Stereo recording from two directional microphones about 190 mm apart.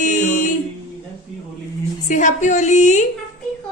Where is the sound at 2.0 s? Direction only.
40° left (ahead or behind).